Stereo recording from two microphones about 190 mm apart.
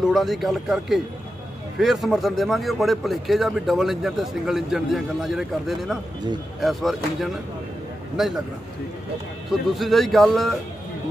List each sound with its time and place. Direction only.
0.1 s speech: centre (ahead or behind)
9.5 s speech: centre (ahead or behind)